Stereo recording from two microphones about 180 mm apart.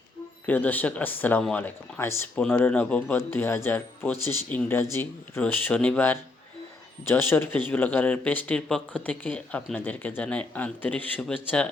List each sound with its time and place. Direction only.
0.4 s speech: 10° left (ahead or behind)